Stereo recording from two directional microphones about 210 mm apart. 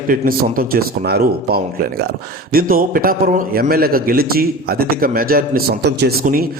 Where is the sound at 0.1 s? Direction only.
40° right (ahead or behind).